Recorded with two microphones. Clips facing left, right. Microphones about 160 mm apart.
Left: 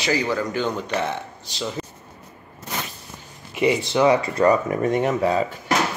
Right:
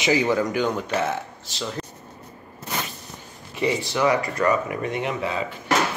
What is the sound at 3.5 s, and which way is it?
Speech, 20° left (ahead or behind).